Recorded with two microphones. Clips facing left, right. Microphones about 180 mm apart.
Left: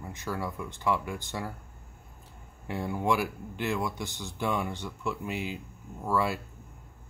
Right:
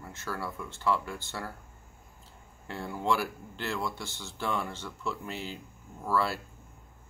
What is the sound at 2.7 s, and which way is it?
Speech, 15° left (ahead or behind).